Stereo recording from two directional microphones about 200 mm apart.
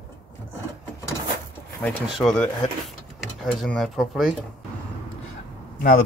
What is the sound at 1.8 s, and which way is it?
Speech, centre (ahead or behind).